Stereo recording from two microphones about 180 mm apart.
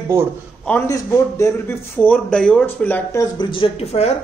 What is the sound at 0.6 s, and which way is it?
A man's voice, 10° left (ahead or behind).